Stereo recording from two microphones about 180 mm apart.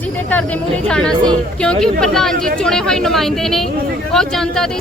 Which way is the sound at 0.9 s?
5° left (ahead or behind).